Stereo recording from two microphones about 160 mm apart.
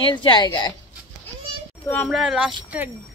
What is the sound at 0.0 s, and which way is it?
Speech, 30° left (ahead or behind).